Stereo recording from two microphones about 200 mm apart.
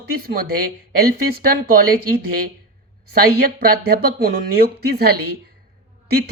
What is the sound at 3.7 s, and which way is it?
Speech, 45° right (ahead or behind).